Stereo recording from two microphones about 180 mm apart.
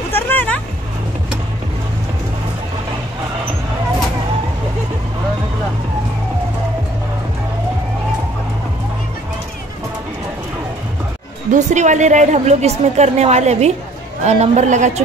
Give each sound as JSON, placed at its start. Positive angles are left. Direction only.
{"t": 0.1, "sound": "vehicle", "side_deg": 10}
{"t": 11.5, "sound": "a woman's voice", "side_deg": -40}